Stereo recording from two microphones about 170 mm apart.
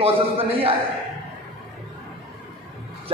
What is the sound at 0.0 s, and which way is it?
Speech, 35° right (ahead or behind).